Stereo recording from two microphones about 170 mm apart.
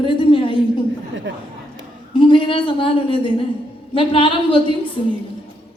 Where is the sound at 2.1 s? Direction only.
30° left (ahead or behind).